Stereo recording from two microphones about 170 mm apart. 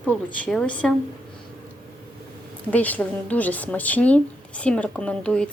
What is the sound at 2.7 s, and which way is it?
A woman's voice, 10° left (ahead or behind).